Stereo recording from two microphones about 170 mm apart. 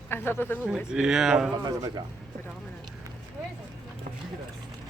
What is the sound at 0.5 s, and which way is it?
Speech, 10° right (ahead or behind).